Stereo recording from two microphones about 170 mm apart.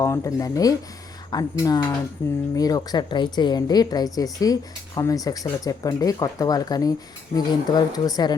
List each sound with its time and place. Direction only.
0.0 s a woman's voice: 20° left (ahead or behind)